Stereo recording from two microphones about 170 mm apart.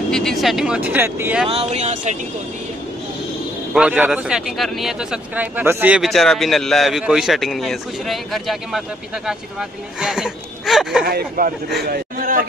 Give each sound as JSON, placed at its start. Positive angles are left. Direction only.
{"t": 0.1, "sound": "speech", "side_deg": 0}
{"t": 1.5, "sound": "speech", "side_deg": -40}
{"t": 3.7, "sound": "speech", "side_deg": -5}
{"t": 11.1, "sound": "a man's voice", "side_deg": -60}